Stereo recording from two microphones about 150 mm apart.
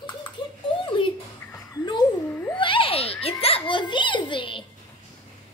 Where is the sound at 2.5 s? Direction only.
35° left (ahead or behind).